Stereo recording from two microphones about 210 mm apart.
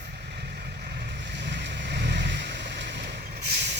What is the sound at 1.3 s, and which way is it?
Vehicle, 55° right (ahead or behind).